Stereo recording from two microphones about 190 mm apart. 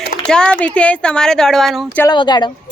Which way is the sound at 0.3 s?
5° left (ahead or behind).